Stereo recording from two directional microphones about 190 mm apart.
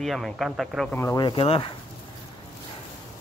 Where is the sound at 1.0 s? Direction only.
20° left (ahead or behind).